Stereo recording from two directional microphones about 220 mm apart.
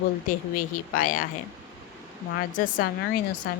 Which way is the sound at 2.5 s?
40° left (ahead or behind).